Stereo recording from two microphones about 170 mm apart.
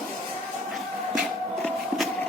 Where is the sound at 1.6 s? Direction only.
Centre (ahead or behind).